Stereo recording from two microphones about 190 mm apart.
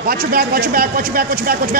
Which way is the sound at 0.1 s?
50° right (ahead or behind).